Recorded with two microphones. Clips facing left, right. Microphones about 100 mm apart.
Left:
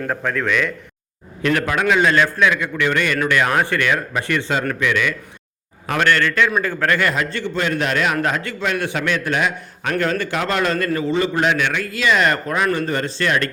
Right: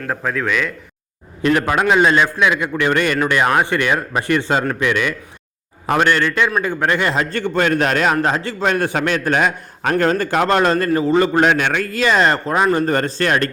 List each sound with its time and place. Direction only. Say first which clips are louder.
0.1 s speech: right 2 dB; 5° right (ahead or behind)
1.4 s speech: right 3 dB; 30° right (ahead or behind)
2.6 s a man's voice: right 2 dB; 35° right (ahead or behind)
3.2 s a man's voice: right 2 dB; 25° right (ahead or behind)
5.8 s speech: right 2 dB; 25° right (ahead or behind)
7.2 s a man's voice: right 4 dB; 50° right (ahead or behind)